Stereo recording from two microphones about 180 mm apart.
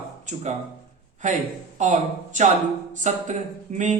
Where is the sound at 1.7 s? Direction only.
40° right (ahead or behind).